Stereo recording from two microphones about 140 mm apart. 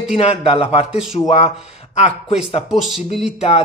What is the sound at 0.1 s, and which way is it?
Speech, 40° left (ahead or behind).